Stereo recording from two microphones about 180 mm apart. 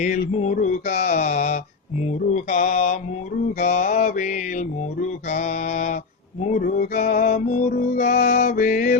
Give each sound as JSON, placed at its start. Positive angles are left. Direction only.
{"t": 0.0, "sound": "mantra", "side_deg": 40}
{"t": 6.4, "sound": "music", "side_deg": 45}